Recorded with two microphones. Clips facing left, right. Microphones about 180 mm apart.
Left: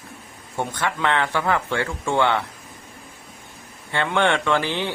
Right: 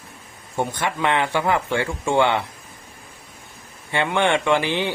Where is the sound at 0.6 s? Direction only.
15° right (ahead or behind).